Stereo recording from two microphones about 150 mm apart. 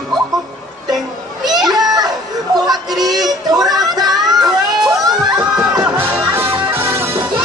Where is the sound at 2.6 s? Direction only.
25° right (ahead or behind).